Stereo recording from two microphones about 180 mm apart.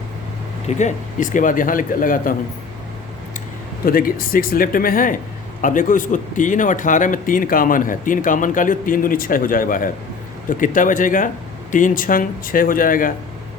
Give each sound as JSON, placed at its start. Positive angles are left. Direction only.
{"t": 0.7, "sound": "a man's voice", "side_deg": 40}
{"t": 3.8, "sound": "a man's voice", "side_deg": 55}